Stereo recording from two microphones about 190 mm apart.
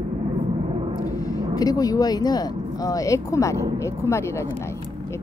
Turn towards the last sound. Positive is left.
turn(degrees=15)  # may be behind; listen again after turning